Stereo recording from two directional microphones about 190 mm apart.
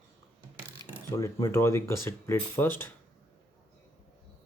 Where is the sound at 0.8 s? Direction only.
25° right (ahead or behind).